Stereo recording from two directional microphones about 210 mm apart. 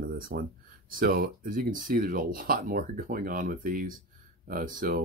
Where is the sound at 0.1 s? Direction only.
45° right (ahead or behind).